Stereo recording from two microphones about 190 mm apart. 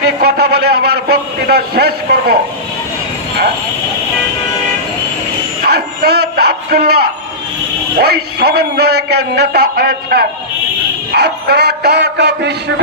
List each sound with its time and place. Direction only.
0.2 s a man's voice: 55° right (ahead or behind)
5.6 s a sound: 55° right (ahead or behind)
8.0 s a man's voice: 55° right (ahead or behind)